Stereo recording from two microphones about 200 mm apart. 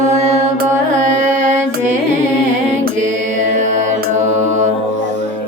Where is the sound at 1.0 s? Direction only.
40° right (ahead or behind).